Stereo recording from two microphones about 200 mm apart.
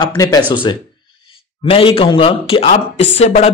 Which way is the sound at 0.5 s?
25° left (ahead or behind).